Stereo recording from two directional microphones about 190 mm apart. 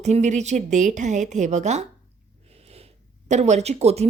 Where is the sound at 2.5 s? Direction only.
30° right (ahead or behind).